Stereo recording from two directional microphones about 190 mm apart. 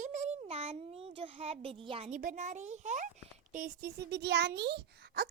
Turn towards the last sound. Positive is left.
turn(degrees=-60)  # may be behind; listen again after turning